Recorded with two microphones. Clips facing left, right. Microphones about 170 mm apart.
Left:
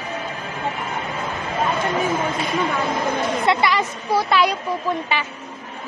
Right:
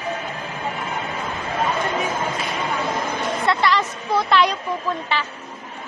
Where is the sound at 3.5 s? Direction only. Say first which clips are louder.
Even; 10° left (ahead or behind).